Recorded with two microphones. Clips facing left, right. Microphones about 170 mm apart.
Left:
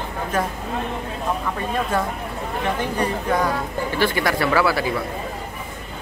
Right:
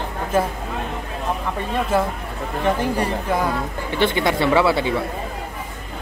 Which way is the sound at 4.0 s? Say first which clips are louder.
Right 2 dB; 20° right (ahead or behind).